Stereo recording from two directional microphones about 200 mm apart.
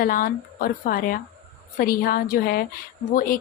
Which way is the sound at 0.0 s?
45° left (ahead or behind).